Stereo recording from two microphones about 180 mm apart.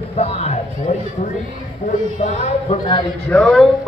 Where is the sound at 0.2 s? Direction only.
35° left (ahead or behind).